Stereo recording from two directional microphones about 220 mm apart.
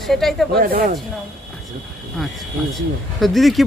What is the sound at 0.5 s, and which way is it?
Speech, 40° right (ahead or behind).